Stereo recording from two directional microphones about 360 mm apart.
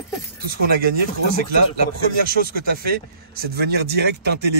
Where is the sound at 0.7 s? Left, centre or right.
Right.